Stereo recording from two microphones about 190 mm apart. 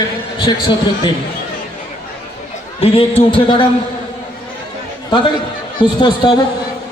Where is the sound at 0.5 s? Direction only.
25° left (ahead or behind).